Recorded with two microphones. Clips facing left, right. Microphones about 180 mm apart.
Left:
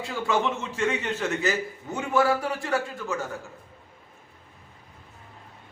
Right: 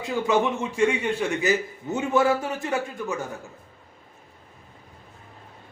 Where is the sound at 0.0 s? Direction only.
15° right (ahead or behind).